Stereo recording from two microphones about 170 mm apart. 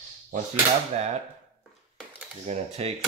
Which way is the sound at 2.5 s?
40° right (ahead or behind).